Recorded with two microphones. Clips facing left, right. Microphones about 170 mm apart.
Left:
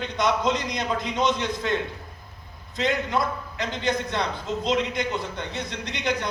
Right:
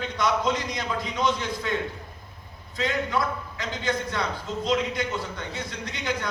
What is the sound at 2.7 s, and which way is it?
A man's voice, 20° left (ahead or behind).